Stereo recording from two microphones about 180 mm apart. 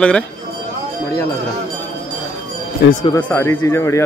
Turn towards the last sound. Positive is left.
turn(degrees=15)  # may be behind; listen again after turning